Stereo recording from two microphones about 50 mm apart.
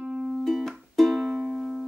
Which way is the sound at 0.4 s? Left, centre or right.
Centre.